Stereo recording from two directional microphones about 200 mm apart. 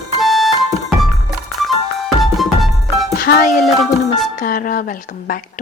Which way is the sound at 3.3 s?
55° left (ahead or behind).